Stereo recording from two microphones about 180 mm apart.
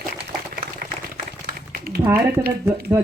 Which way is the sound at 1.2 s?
60° right (ahead or behind).